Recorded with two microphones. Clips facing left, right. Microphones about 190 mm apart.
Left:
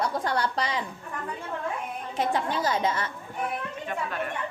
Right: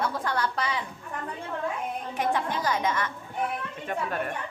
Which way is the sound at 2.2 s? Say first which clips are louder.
Left 1 dB; 35° left (ahead or behind).